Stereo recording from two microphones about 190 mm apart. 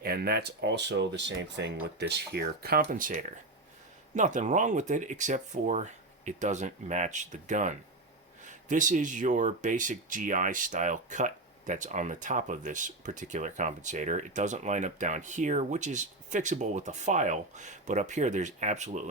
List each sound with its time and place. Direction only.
0.0 s speech: 55° right (ahead or behind); by 19.0 s 40° right (ahead or behind)